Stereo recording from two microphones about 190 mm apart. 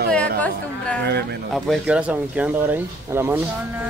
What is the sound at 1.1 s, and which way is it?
Speech, 60° right (ahead or behind).